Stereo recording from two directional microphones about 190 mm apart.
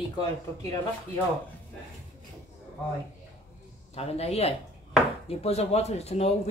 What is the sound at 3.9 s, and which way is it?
Speech, 30° left (ahead or behind).